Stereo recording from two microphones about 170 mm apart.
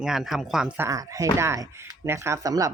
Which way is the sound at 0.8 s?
20° right (ahead or behind).